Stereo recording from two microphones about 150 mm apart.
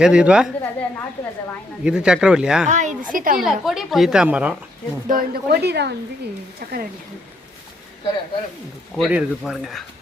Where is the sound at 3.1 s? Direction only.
65° right (ahead or behind).